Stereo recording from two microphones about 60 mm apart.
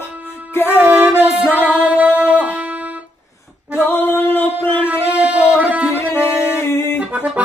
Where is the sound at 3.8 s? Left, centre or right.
Left.